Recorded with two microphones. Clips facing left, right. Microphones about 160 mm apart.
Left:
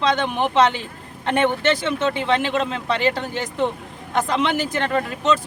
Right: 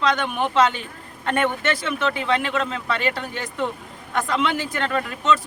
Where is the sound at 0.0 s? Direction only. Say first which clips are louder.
Left 2 dB; 25° left (ahead or behind).